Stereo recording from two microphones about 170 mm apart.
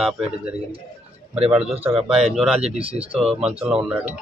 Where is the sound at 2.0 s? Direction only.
5° right (ahead or behind).